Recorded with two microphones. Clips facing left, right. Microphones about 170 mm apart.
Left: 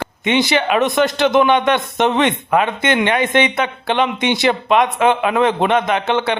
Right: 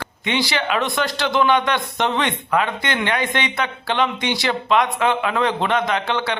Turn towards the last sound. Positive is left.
turn(degrees=20)  # may be behind; listen again after turning